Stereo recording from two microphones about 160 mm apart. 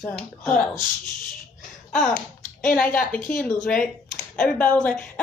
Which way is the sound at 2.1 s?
55° left (ahead or behind).